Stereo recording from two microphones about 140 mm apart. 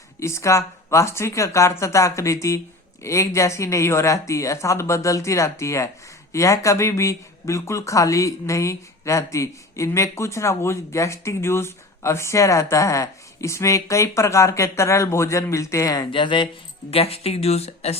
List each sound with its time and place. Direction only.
0.2 s speech: 20° left (ahead or behind)
16.1 s speech: 35° left (ahead or behind)
16.9 s speech: 45° left (ahead or behind)